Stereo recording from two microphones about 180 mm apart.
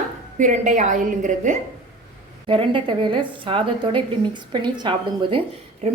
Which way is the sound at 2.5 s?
30° right (ahead or behind).